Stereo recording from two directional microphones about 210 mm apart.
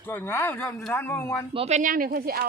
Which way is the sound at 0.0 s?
10° left (ahead or behind).